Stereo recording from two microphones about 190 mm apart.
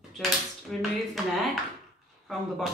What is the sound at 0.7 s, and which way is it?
Speech, 5° left (ahead or behind).